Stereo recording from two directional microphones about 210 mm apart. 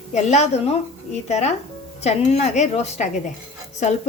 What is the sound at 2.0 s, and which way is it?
Speech, 30° left (ahead or behind).